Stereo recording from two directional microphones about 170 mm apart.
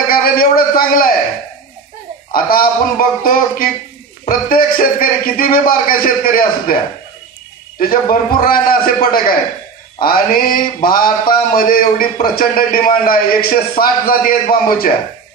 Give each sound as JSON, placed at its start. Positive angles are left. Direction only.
{"t": 0.1, "sound": "speech", "side_deg": 60}
{"t": 2.3, "sound": "speech", "side_deg": 60}
{"t": 7.9, "sound": "speech", "side_deg": 60}